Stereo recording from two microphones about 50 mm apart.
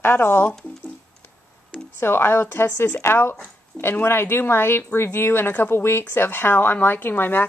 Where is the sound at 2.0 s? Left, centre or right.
Left.